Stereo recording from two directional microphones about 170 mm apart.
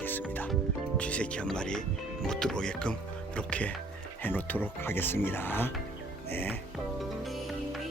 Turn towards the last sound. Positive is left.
turn(degrees=10)  # may be behind; listen again after turning